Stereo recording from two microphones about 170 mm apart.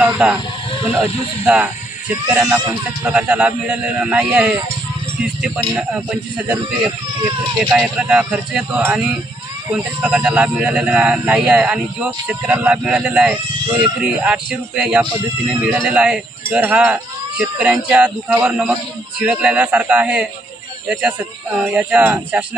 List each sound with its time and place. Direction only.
0.0 s snake: 5° right (ahead or behind)
1.4 s speech: 10° right (ahead or behind)
5.8 s speech: 5° right (ahead or behind)